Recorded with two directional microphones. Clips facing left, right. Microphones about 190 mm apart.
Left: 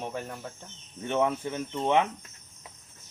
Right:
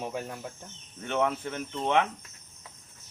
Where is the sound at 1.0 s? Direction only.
15° left (ahead or behind).